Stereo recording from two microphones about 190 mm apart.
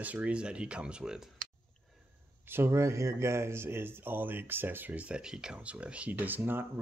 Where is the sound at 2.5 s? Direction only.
15° right (ahead or behind).